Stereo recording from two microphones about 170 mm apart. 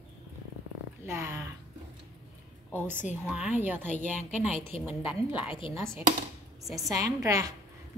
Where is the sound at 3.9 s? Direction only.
45° left (ahead or behind).